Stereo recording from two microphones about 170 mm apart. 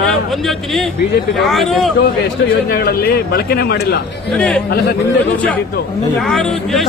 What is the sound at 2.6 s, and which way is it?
Speech, 65° left (ahead or behind).